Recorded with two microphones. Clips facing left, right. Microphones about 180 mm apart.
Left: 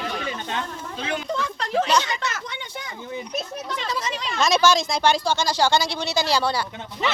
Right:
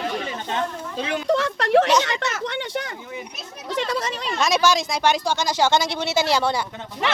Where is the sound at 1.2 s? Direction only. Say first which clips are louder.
Right 7 dB; 75° right (ahead or behind).